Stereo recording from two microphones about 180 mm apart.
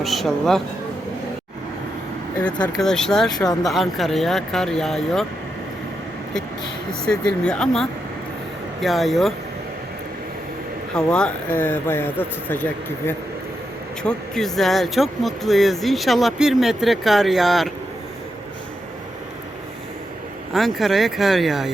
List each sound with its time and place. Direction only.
0.0 s speech: centre (ahead or behind)
2.7 s speech: 5° left (ahead or behind)
3.3 s speech: 20° left (ahead or behind)
3.7 s speech: centre (ahead or behind)
7.0 s speech: 5° left (ahead or behind)
10.9 s speech: 5° left (ahead or behind)
20.5 s speech: centre (ahead or behind)